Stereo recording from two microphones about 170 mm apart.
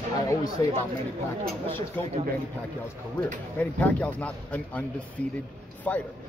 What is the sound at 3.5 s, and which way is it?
A man's voice, 10° left (ahead or behind).